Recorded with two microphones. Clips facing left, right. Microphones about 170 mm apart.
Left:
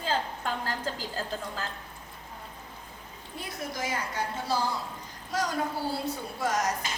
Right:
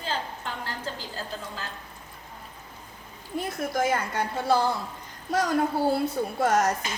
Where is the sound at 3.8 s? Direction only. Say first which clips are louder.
Right 7 dB; 55° right (ahead or behind).